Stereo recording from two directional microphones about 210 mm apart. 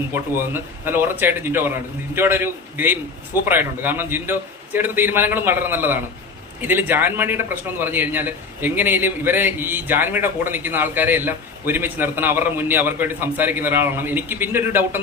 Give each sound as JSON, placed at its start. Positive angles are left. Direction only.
{"t": 0.1, "sound": "a man's voice", "side_deg": -10}